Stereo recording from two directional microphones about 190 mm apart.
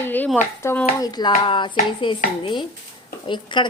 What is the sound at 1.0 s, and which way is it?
A woman's voice, 20° left (ahead or behind).